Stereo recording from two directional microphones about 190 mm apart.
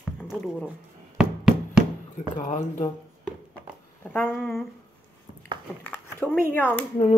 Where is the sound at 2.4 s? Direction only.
40° left (ahead or behind).